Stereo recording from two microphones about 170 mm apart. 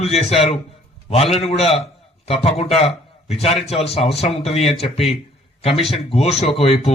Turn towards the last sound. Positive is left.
turn(degrees=35)  # may be behind; listen again after turning